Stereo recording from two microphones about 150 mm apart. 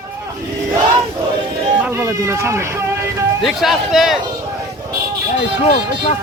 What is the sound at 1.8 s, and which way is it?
Speech, 15° right (ahead or behind).